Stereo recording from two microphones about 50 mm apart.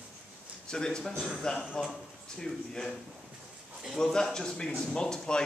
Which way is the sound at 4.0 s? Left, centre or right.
Centre.